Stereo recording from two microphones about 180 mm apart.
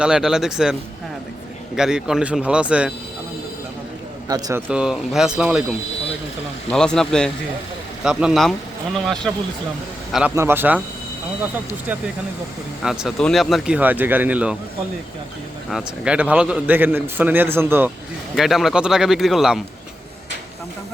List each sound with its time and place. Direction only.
0.0 s speech: 5° right (ahead or behind)
4.3 s speech: 20° right (ahead or behind)
4.7 s speech: 5° right (ahead or behind)
6.7 s speech: 5° left (ahead or behind)
10.1 s a man's voice: 5° right (ahead or behind)
12.8 s speech: centre (ahead or behind)
15.7 s a man's voice: 5° right (ahead or behind)
18.3 s speech: centre (ahead or behind)